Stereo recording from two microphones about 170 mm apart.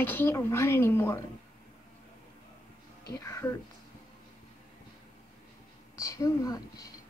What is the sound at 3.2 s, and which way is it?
Speech, 15° left (ahead or behind).